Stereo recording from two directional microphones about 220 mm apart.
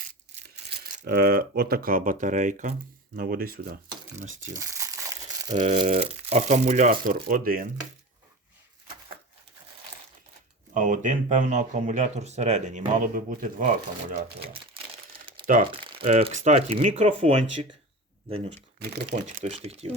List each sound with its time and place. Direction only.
0.9 s speech: 40° right (ahead or behind)
4.5 s crumpling: 15° right (ahead or behind)
5.5 s speech: 30° right (ahead or behind)
10.8 s speech: 35° right (ahead or behind)
15.6 s speech: 25° right (ahead or behind)
18.4 s speech: 40° right (ahead or behind)